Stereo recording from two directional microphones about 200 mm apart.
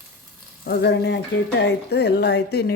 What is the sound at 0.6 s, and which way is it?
Speech, 55° left (ahead or behind).